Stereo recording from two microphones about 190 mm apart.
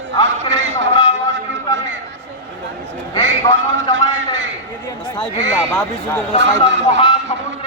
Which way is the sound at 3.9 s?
80° right.